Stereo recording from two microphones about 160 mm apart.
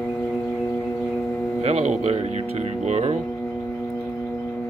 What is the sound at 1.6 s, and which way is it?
Speech, 40° right (ahead or behind).